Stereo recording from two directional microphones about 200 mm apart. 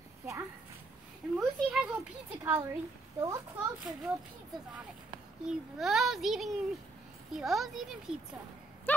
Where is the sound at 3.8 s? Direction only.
5° right (ahead or behind).